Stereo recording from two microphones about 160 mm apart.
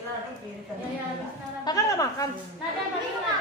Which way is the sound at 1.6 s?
20° left (ahead or behind).